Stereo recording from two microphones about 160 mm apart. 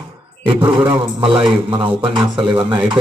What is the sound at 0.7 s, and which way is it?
A man's voice, 35° right (ahead or behind).